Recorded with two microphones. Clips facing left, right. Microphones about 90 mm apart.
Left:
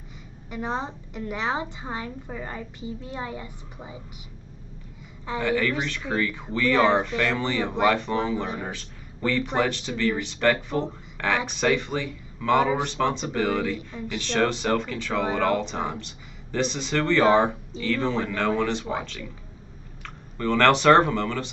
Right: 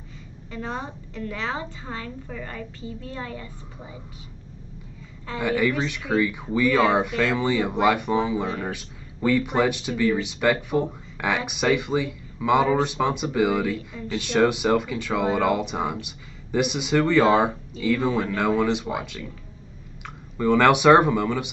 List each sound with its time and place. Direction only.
0.5 s a woman's voice: 20° left (ahead or behind)
5.4 s speech: 15° right (ahead or behind)
8.5 s a woman's voice: 15° left (ahead or behind)
8.7 s speech: 15° right (ahead or behind)
20.3 s speech: 15° right (ahead or behind)